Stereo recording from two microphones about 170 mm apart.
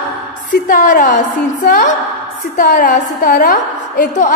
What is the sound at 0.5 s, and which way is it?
A woman's voice, 50° left (ahead or behind).